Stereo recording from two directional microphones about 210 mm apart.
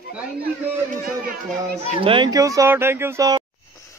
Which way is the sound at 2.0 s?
25° right (ahead or behind).